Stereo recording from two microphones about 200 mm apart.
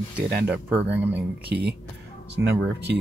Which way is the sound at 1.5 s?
55° right (ahead or behind).